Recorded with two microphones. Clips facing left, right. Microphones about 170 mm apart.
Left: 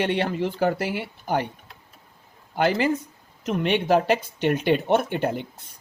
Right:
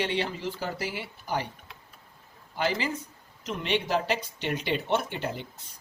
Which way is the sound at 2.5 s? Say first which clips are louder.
Left 7 dB; 55° left (ahead or behind).